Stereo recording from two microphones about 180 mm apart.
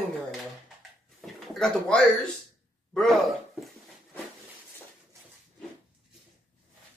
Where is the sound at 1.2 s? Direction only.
Centre (ahead or behind).